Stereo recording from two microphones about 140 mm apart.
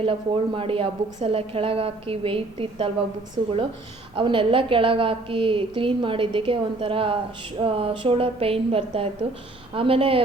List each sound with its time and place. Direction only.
0.0 s a woman's voice: 40° right (ahead or behind)